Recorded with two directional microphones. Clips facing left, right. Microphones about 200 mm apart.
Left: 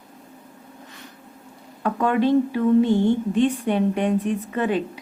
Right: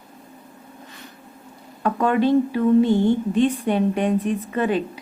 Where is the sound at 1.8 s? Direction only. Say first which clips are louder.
Right 1 dB; 35° right (ahead or behind).